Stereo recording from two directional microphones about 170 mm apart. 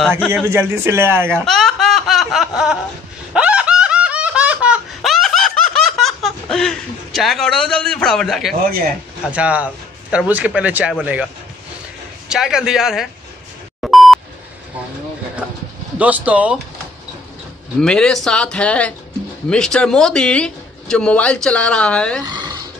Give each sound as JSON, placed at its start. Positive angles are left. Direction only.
{"t": 0.3, "sound": "a man's voice", "side_deg": -15}
{"t": 1.4, "sound": "a sound", "side_deg": 0}
{"t": 3.3, "sound": "snicker", "side_deg": -5}
{"t": 9.3, "sound": "a man's voice", "side_deg": -5}
{"t": 12.3, "sound": "a man's voice", "side_deg": -5}
{"t": 13.7, "sound": "beep", "side_deg": 0}
{"t": 16.0, "sound": "a man's voice", "side_deg": -10}
{"t": 17.7, "sound": "a man's voice", "side_deg": 5}
{"t": 22.2, "sound": "a sound", "side_deg": -25}